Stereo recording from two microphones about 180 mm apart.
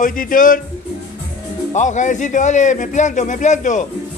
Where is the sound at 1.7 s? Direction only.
45° left (ahead or behind).